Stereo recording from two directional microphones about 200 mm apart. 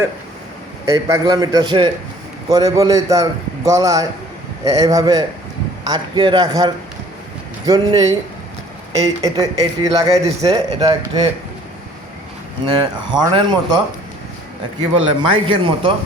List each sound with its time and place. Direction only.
0.9 s a man's voice: 15° right (ahead or behind)
12.6 s a man's voice: 25° right (ahead or behind)
15.0 s a man's voice: 25° right (ahead or behind)